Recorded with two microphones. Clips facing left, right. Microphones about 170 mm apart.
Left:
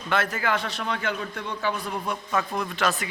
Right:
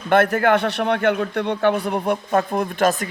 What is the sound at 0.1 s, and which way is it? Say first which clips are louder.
A man's voice: right 10 dB; 60° right (ahead or behind).